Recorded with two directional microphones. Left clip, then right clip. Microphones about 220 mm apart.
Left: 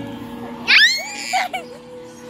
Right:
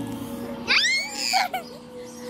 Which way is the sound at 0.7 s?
30° left (ahead or behind).